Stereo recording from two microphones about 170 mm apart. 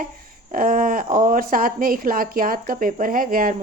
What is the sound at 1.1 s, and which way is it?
A woman's voice, 55° right (ahead or behind).